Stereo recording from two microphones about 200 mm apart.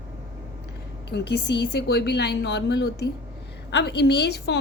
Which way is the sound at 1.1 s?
55° left (ahead or behind).